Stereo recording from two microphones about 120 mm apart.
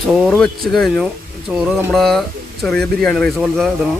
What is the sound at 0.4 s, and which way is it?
Speech, 5° left (ahead or behind).